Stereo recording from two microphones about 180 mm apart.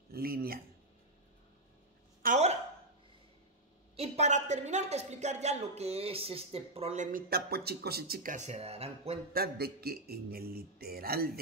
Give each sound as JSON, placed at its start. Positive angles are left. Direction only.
{"t": 0.1, "sound": "a man's voice", "side_deg": -55}
{"t": 2.2, "sound": "a sound", "side_deg": -40}
{"t": 3.9, "sound": "speech", "side_deg": -35}
{"t": 9.3, "sound": "a man's voice", "side_deg": -60}